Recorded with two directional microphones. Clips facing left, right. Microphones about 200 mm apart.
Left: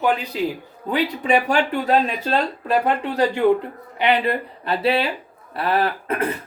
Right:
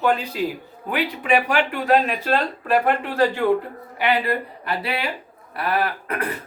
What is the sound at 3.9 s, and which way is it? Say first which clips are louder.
A man's voice: left 2 dB; 25° left (ahead or behind).